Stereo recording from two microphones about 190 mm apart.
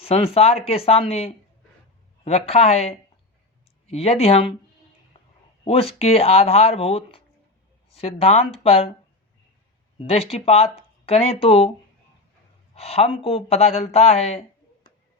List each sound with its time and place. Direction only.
0.0 s speech: 30° left (ahead or behind)
5.6 s speech: 30° left (ahead or behind)
10.0 s speech: 30° left (ahead or behind)
12.7 s speech: 30° left (ahead or behind)